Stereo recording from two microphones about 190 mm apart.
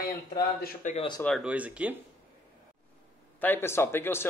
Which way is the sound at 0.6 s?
45° left (ahead or behind).